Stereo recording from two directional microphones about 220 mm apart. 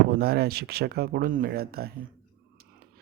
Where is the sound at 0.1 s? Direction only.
45° right (ahead or behind).